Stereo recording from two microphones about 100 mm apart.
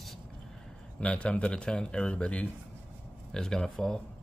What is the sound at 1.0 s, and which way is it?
Speech, 10° left (ahead or behind).